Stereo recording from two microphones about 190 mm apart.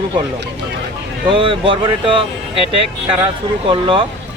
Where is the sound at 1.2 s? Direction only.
25° right (ahead or behind).